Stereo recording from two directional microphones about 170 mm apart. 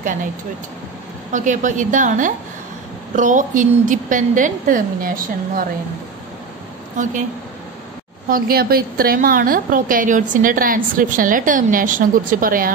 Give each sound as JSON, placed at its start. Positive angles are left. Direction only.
{"t": 1.3, "sound": "a woman's voice", "side_deg": -50}
{"t": 8.3, "sound": "a woman's voice", "side_deg": -60}